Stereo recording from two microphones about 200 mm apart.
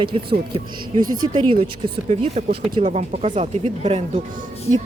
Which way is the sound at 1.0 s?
90° right.